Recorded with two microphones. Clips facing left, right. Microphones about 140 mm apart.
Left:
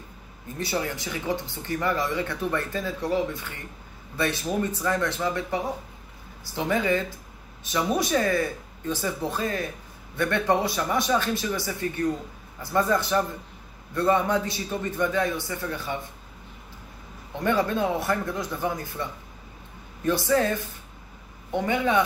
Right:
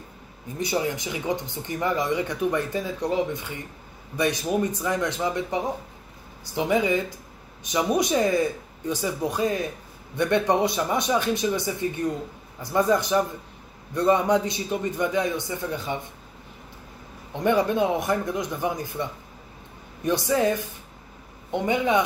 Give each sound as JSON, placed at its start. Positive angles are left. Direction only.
{"t": 0.6, "sound": "speech", "side_deg": -15}
{"t": 17.3, "sound": "speech", "side_deg": -20}